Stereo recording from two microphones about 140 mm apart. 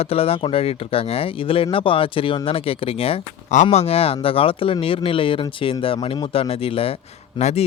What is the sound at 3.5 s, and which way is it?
Speech, 55° left (ahead or behind).